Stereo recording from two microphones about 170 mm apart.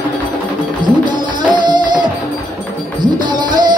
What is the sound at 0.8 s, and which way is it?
Music, 25° right (ahead or behind).